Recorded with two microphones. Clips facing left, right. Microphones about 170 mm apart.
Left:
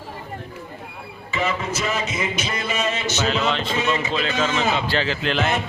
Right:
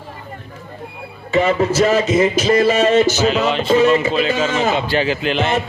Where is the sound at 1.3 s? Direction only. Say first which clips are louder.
Right 9 dB; 35° right (ahead or behind).